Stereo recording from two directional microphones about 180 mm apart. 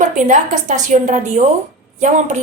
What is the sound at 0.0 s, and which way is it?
A woman's voice, 45° right (ahead or behind).